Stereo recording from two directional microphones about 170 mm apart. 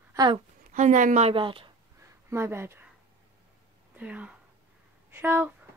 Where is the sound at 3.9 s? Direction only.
10° right (ahead or behind).